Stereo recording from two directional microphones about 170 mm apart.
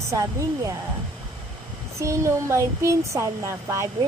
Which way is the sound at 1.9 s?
15° right (ahead or behind).